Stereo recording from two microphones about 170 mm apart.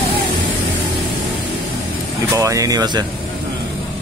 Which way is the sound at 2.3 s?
20° right (ahead or behind).